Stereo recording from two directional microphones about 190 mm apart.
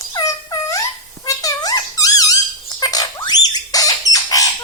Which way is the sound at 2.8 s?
20° left (ahead or behind).